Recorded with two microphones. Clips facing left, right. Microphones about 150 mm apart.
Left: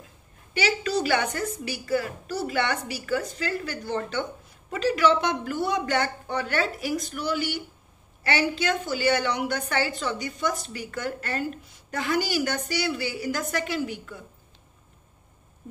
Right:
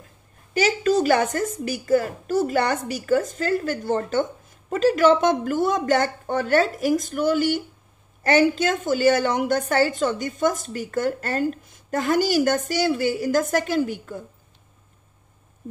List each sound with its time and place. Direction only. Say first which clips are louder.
0.6 s a woman's voice: right 6 dB; 45° right (ahead or behind)